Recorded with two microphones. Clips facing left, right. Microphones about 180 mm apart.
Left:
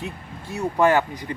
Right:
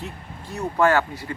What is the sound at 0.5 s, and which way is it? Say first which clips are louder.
Speech: left 1 dB; 15° left (ahead or behind).